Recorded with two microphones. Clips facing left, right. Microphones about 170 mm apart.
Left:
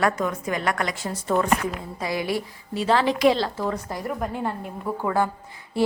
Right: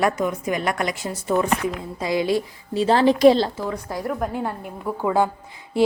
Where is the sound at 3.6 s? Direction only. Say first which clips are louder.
Even; 5° right (ahead or behind).